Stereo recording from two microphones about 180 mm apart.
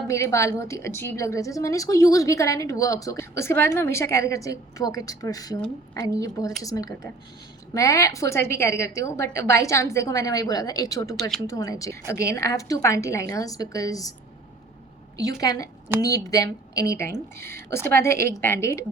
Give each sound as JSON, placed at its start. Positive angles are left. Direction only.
{"t": 0.1, "sound": "a woman's voice", "side_deg": 15}
{"t": 11.2, "sound": "a woman's voice", "side_deg": 5}
{"t": 11.4, "sound": "a woman's voice", "side_deg": 20}
{"t": 15.2, "sound": "a woman's voice", "side_deg": 20}